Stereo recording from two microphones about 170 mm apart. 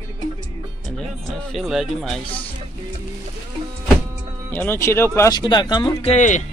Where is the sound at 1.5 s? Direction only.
Centre (ahead or behind).